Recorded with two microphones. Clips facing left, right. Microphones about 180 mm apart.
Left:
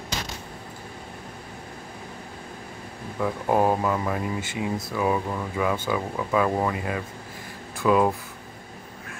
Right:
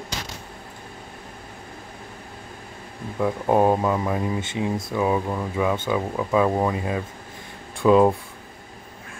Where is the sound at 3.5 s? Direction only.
15° right (ahead or behind).